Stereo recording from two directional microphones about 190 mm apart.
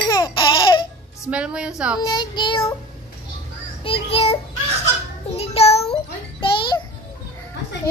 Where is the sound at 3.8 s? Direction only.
30° left (ahead or behind).